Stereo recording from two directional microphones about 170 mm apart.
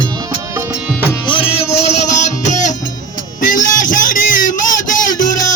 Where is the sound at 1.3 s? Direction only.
35° left (ahead or behind).